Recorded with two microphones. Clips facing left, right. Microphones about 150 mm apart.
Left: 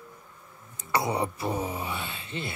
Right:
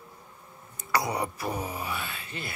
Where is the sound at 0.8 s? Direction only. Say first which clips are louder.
Left 1 dB; 25° left (ahead or behind).